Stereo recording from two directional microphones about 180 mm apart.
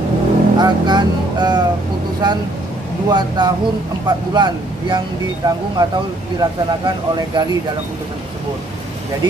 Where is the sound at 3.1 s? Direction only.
25° right (ahead or behind).